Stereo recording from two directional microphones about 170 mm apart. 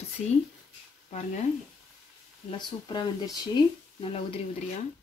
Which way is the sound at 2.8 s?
25° left (ahead or behind).